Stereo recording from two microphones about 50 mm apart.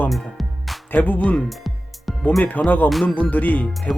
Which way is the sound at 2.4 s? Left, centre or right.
Left.